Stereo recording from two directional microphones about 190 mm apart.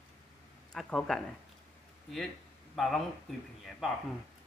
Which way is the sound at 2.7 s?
Centre (ahead or behind).